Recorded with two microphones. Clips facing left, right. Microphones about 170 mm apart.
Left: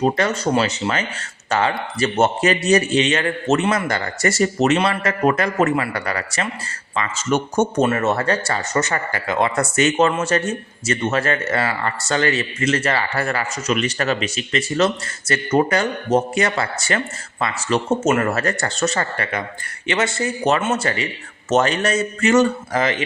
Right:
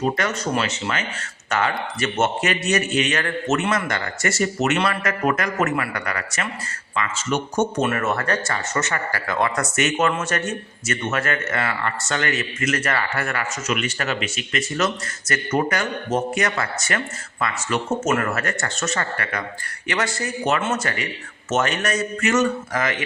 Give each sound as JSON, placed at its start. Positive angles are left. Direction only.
{"t": 0.0, "sound": "a man's voice", "side_deg": 30}
{"t": 7.3, "sound": "speech", "side_deg": 45}
{"t": 7.9, "sound": "speech", "side_deg": 25}
{"t": 9.2, "sound": "a man's voice", "side_deg": 20}